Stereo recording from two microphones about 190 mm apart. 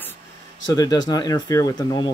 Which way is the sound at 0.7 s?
20° left (ahead or behind).